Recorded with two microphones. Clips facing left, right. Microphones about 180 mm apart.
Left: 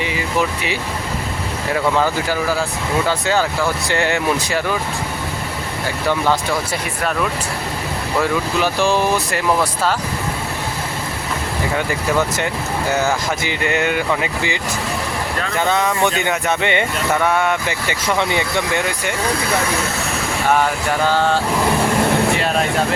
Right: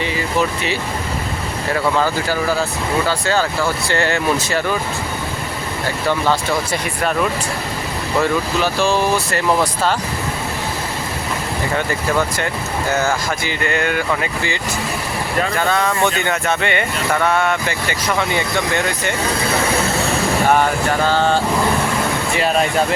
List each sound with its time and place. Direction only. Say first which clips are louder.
1.7 s speech: even; 10° left (ahead or behind)
8.2 s speech: even; 15° left (ahead or behind)
12.9 s speech: even; 15° left (ahead or behind)